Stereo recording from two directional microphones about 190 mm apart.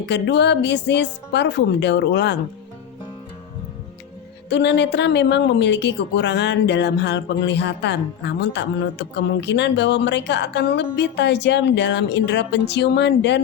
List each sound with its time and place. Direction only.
0.0 s a woman's voice: 65° left (ahead or behind)
4.4 s a woman's voice: 65° left (ahead or behind)